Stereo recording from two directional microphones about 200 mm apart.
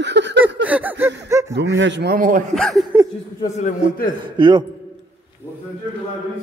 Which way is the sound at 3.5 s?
40° left (ahead or behind).